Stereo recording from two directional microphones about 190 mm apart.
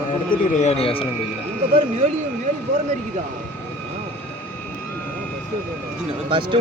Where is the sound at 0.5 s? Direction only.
35° left (ahead or behind).